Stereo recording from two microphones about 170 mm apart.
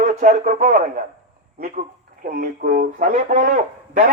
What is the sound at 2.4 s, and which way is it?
Speech, 55° right (ahead or behind).